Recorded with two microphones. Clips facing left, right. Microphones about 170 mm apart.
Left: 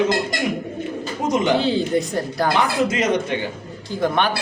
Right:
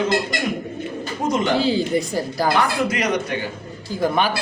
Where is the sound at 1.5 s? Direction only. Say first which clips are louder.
Even; centre (ahead or behind).